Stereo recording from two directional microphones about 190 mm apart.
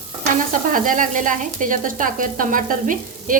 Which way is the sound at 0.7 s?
45° right (ahead or behind).